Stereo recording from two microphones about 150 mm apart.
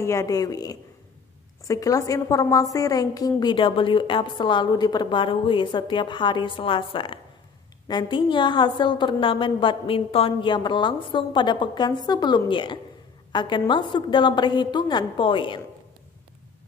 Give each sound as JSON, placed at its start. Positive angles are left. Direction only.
{"t": 0.0, "sound": "a woman's voice", "side_deg": 20}